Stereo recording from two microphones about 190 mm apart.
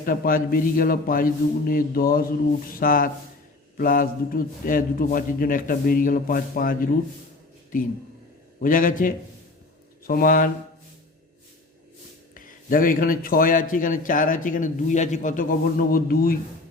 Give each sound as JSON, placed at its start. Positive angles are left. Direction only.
{"t": 0.0, "sound": "a man's voice", "side_deg": 50}
{"t": 12.3, "sound": "a man's voice", "side_deg": 45}